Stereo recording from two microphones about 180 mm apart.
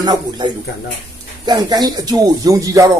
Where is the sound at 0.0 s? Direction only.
25° right (ahead or behind).